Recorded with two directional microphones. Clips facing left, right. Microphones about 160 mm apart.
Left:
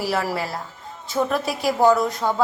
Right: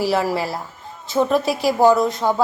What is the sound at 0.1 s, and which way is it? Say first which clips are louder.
A woman's voice: right 4 dB; 25° right (ahead or behind).